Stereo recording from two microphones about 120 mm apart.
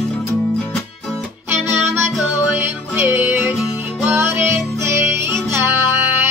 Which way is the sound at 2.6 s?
20° right (ahead or behind).